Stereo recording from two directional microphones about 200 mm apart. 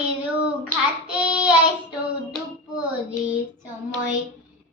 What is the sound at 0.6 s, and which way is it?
Child singing, 5° right (ahead or behind).